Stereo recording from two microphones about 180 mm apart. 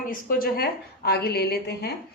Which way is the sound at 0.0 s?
50° left (ahead or behind).